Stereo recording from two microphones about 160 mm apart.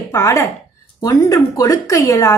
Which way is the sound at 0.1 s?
20° left (ahead or behind).